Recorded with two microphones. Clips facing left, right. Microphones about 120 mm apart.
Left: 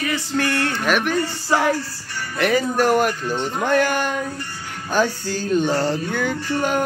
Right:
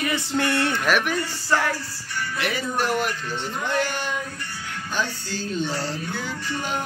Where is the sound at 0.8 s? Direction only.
5° right (ahead or behind).